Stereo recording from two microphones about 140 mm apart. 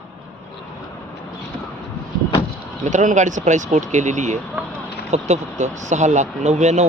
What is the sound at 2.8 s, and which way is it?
Speech, 60° right (ahead or behind).